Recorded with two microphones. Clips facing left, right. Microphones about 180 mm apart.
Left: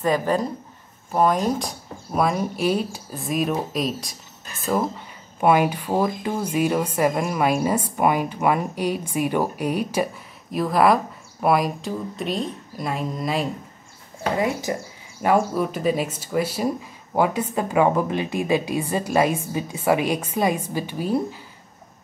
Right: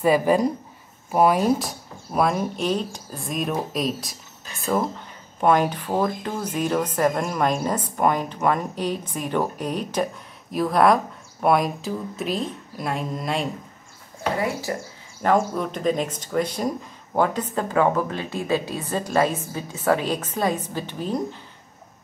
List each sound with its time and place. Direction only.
0.0 s speech: 10° right (ahead or behind)
14.4 s speech: 20° left (ahead or behind)
15.2 s speech: 10° left (ahead or behind)